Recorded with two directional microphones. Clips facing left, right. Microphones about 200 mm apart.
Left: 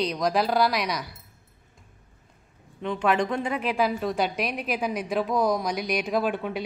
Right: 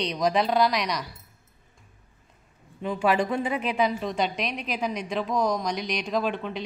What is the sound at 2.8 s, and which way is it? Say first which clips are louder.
A woman's voice: even; 5° right (ahead or behind).